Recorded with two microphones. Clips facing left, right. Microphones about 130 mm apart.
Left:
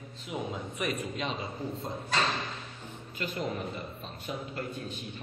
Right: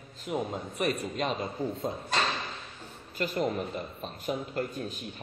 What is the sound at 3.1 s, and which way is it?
A man's voice, 40° right (ahead or behind).